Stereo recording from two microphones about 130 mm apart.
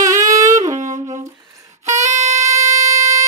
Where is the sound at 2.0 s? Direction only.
60° right (ahead or behind).